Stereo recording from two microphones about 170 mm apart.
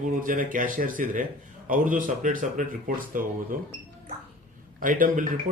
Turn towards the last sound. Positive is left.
turn(degrees=-55)  # may be behind; listen again after turning